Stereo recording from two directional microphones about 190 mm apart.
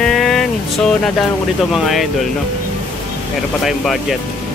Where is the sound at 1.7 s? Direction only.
Centre (ahead or behind).